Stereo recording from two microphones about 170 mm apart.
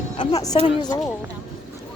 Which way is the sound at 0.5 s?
35° left (ahead or behind).